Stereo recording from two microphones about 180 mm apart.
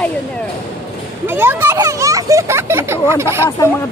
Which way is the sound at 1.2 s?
10° right (ahead or behind).